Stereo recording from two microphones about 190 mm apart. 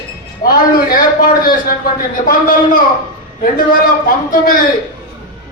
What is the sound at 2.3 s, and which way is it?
Speech, 45° left (ahead or behind).